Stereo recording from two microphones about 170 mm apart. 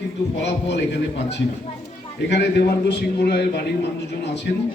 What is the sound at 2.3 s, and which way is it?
A man's voice, 75° left (ahead or behind).